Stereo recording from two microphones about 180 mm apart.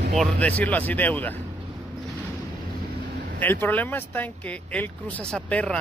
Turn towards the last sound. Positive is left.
turn(degrees=5)  # may be behind; listen again after turning